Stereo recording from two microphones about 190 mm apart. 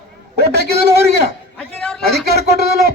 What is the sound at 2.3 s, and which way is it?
Speech, 55° right (ahead or behind).